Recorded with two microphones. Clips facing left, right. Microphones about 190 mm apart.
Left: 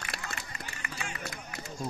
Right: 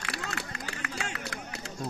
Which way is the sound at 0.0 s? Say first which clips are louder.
Right 4 dB; 75° right (ahead or behind).